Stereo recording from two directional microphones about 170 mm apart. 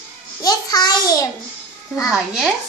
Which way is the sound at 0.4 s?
20° left (ahead or behind).